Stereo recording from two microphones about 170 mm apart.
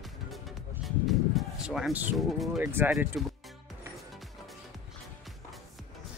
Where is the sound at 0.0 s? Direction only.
Centre (ahead or behind).